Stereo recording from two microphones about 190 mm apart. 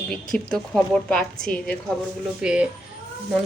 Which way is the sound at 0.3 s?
5° left (ahead or behind).